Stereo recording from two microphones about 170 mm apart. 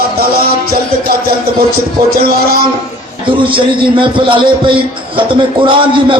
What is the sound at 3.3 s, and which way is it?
A man's voice, 30° right (ahead or behind).